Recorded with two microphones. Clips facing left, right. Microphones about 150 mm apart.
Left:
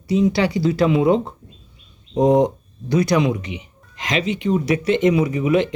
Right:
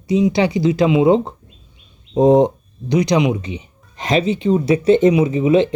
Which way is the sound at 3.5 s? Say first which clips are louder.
Right 3 dB; 35° right (ahead or behind).